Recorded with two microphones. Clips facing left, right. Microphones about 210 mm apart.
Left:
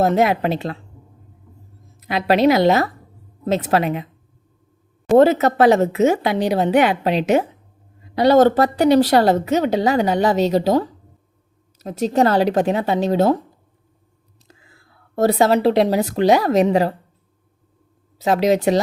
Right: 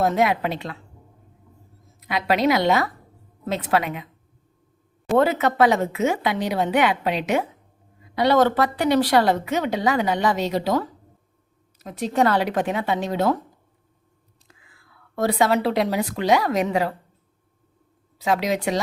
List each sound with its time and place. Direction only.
0.0 s a woman's voice: 30° left (ahead or behind)
2.0 s a woman's voice: 30° left (ahead or behind)
5.1 s a woman's voice: 30° left (ahead or behind)
14.4 s whispering: 30° left (ahead or behind)
15.1 s a woman's voice: 40° left (ahead or behind)
18.3 s a woman's voice: 35° left (ahead or behind)